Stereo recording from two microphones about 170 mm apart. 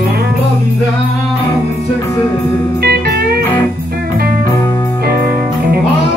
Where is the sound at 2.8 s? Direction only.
70° right (ahead or behind).